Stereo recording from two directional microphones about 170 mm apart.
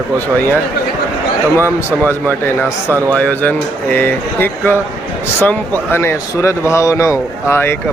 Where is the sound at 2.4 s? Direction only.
15° left (ahead or behind).